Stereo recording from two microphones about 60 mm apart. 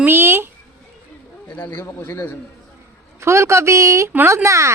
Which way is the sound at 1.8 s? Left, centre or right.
Left.